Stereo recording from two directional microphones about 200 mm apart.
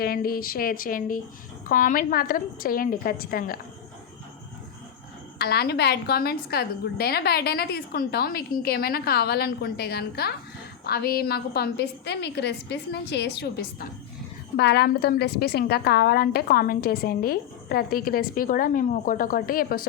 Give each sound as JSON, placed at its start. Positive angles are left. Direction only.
{"t": 0.0, "sound": "a woman's voice", "side_deg": 50}
{"t": 5.4, "sound": "a woman's voice", "side_deg": 50}